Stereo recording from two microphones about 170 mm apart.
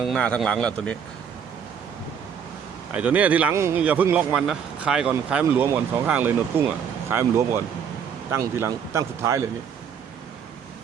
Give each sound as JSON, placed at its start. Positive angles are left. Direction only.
{"t": 0.0, "sound": "a man's voice", "side_deg": 5}
{"t": 2.9, "sound": "speech", "side_deg": -10}